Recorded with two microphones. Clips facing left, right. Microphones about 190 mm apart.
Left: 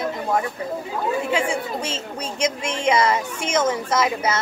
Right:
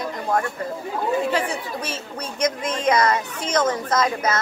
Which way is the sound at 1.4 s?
25° left (ahead or behind).